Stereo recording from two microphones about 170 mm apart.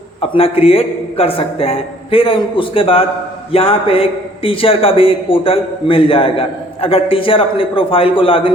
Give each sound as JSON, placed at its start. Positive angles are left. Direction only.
{"t": 0.2, "sound": "a man's voice", "side_deg": 35}